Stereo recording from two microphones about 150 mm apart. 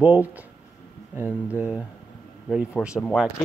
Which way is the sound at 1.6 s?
10° right (ahead or behind).